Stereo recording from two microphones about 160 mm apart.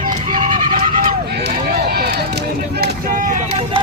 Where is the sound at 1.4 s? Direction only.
80° right.